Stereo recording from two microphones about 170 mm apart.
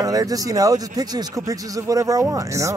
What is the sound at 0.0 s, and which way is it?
Speech, 20° right (ahead or behind).